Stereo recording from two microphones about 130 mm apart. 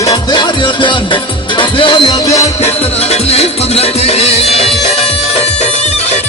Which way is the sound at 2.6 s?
55° left (ahead or behind).